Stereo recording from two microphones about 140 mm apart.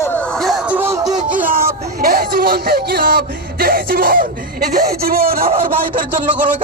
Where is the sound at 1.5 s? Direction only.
90° right.